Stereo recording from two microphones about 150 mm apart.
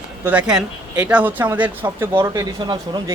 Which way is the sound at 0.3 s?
5° right (ahead or behind).